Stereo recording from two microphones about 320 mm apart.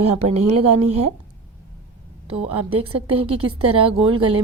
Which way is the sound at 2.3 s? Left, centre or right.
Centre.